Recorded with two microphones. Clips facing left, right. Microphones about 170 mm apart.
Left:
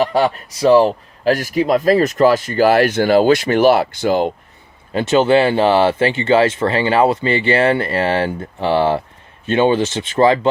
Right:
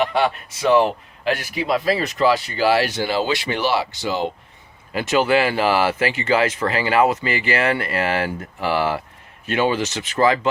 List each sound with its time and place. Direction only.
0.0 s a man's voice: 35° left (ahead or behind)
4.9 s speech: 30° left (ahead or behind)